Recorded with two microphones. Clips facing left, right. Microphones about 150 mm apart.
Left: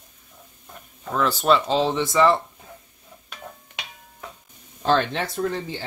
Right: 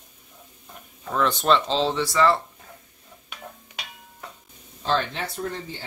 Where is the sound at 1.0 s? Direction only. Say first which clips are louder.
Left 1 dB; centre (ahead or behind); by 2.4 s 20° left (ahead or behind).